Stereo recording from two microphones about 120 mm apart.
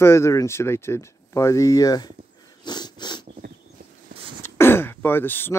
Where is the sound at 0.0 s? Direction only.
20° left (ahead or behind).